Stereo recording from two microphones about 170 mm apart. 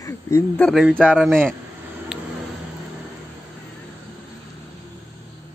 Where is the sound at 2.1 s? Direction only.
5° right (ahead or behind).